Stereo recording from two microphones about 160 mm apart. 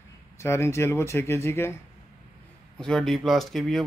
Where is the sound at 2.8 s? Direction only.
5° left (ahead or behind).